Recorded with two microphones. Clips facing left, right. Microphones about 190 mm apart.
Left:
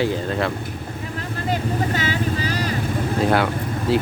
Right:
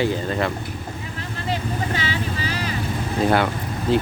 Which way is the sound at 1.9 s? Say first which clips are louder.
Left 3 dB; 45° left (ahead or behind).